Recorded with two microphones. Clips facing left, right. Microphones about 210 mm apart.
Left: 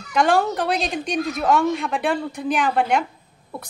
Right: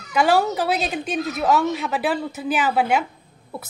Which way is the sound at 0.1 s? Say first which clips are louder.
Even; 5° right (ahead or behind).